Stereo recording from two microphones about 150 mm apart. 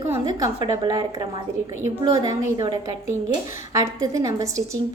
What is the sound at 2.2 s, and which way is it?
A woman's voice, 25° right (ahead or behind).